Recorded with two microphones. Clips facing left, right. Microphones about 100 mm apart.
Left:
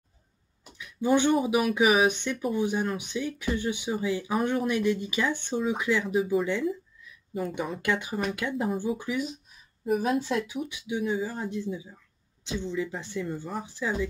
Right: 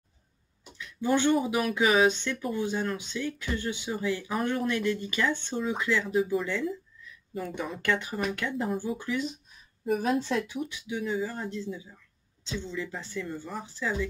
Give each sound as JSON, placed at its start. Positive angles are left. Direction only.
{"t": 0.7, "sound": "a sound", "side_deg": 15}
{"t": 1.3, "sound": "speech", "side_deg": 10}
{"t": 7.8, "sound": "speech", "side_deg": 15}
{"t": 9.8, "sound": "speech", "side_deg": 0}